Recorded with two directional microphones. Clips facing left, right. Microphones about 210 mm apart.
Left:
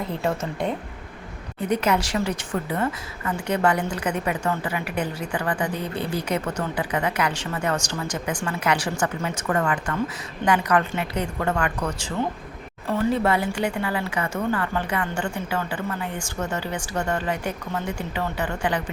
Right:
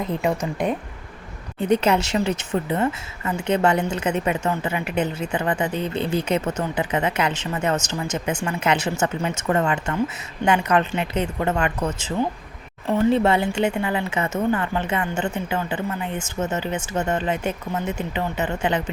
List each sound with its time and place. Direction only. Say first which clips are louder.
0.0 s speech: right 3 dB; 15° right (ahead or behind)
1.6 s speech: right 3 dB; 25° right (ahead or behind)